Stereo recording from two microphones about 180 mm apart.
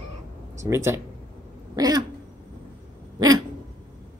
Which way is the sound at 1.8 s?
20° right (ahead or behind).